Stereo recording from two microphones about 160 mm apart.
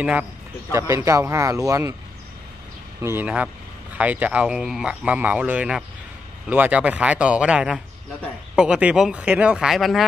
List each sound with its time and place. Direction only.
0.0 s speech: 10° right (ahead or behind)
0.7 s speech: 20° right (ahead or behind)
3.0 s speech: 15° right (ahead or behind)